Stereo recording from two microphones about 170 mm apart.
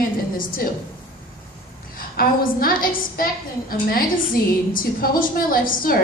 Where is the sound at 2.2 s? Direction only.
60° left (ahead or behind).